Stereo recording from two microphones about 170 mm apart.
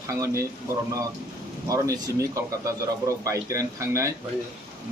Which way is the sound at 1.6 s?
20° right (ahead or behind).